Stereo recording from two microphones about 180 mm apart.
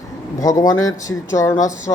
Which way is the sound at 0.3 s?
20° left (ahead or behind).